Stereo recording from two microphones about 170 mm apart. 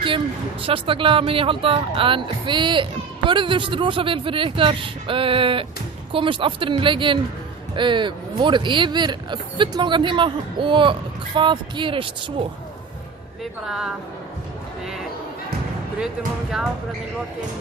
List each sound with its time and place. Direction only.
0.6 s speech: 30° right (ahead or behind)
13.7 s a woman's voice: 5° right (ahead or behind)